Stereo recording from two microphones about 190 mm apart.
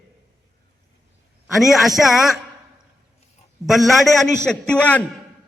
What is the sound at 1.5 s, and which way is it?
Speech, centre (ahead or behind).